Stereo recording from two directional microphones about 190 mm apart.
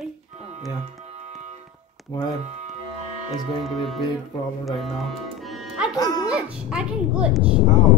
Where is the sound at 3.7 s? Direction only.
Centre (ahead or behind).